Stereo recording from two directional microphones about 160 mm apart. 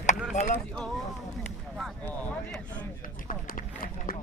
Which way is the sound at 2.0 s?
10° left (ahead or behind).